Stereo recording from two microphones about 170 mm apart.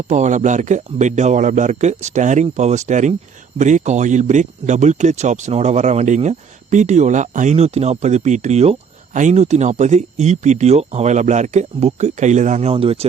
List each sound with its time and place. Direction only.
0.1 s speech: 45° right (ahead or behind)
12.7 s speech: 35° right (ahead or behind)